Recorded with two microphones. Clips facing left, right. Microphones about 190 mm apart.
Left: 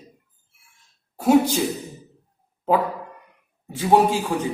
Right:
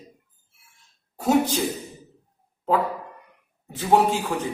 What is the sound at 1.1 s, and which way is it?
Speech, 10° left (ahead or behind).